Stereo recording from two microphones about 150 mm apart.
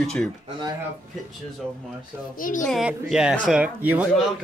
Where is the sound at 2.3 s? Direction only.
65° left (ahead or behind).